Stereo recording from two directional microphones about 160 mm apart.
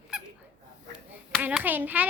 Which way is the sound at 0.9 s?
5° right (ahead or behind).